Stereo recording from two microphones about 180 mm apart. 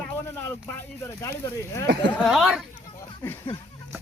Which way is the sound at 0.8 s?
15° left (ahead or behind).